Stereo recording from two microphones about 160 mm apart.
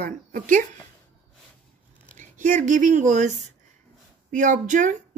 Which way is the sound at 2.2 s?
50° right (ahead or behind).